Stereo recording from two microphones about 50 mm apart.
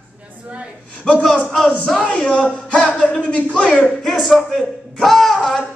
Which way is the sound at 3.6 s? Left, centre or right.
Centre.